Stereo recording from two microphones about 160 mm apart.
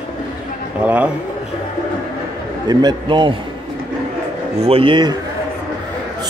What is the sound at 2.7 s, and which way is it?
Speech, 25° right (ahead or behind).